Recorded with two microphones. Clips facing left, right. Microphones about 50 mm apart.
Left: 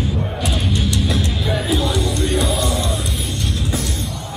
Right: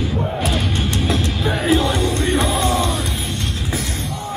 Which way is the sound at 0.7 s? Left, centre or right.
Right.